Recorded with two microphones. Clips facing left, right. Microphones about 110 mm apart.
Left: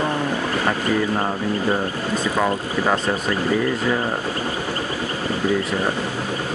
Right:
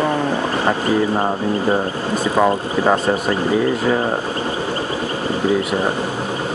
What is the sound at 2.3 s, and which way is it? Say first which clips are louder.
Speech: right 7 dB; 20° right (ahead or behind).